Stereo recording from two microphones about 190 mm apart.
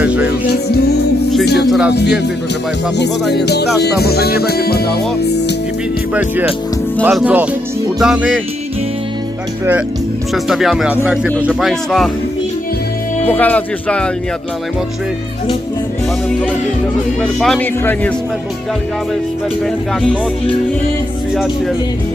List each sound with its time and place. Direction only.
0.0 s music: 5° right (ahead or behind)
0.3 s music: 60° left (ahead or behind)
1.6 s speech: centre (ahead or behind)
1.9 s music: 65° left (ahead or behind)
6.1 s speech: 5° right (ahead or behind)
10.3 s speech: centre (ahead or behind)
13.2 s speech: 5° left (ahead or behind)
17.2 s speech: 5° left (ahead or behind)
19.6 s speech: 5° left (ahead or behind)